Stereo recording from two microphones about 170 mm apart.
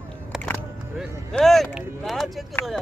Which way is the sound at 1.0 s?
Centre (ahead or behind).